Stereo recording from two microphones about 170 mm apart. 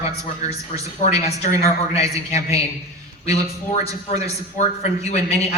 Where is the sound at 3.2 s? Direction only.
40° left (ahead or behind).